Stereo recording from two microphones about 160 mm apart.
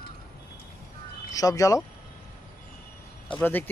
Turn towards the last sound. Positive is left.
turn(degrees=10)  # may be behind; listen again after turning